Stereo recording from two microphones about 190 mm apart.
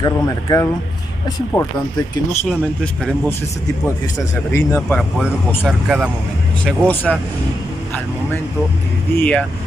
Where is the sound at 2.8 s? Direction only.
5° left (ahead or behind).